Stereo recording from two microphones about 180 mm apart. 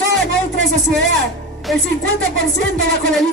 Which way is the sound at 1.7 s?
Centre (ahead or behind).